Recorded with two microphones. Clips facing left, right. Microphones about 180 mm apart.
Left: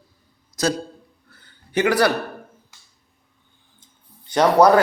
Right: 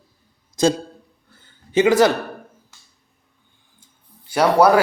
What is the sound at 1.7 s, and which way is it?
Speech, 25° right (ahead or behind).